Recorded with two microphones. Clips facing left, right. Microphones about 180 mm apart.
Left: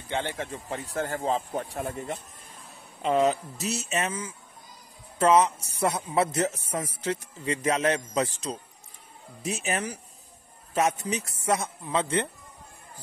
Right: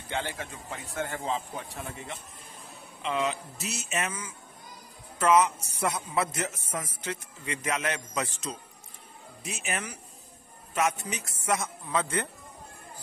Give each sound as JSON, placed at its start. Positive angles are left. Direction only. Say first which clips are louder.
{"t": 0.1, "sound": "a man's voice", "louder": "left 3 dB", "side_deg": 30}